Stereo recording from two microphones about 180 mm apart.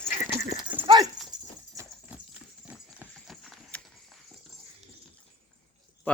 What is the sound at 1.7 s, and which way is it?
Horse, 15° right (ahead or behind).